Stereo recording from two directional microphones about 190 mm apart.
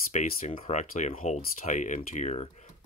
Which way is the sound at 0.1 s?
35° left (ahead or behind).